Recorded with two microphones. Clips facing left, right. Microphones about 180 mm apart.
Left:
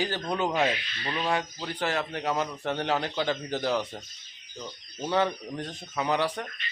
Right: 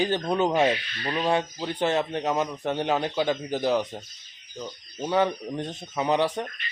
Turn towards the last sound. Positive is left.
turn(degrees=-20)  # may be behind; listen again after turning